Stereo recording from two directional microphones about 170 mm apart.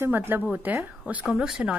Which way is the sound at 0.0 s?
10° right (ahead or behind).